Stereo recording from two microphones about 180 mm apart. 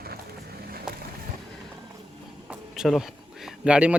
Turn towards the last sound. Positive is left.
turn(degrees=-5)  # may be behind; listen again after turning